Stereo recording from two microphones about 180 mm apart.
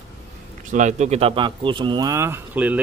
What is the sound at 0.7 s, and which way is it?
Speech, 45° right (ahead or behind).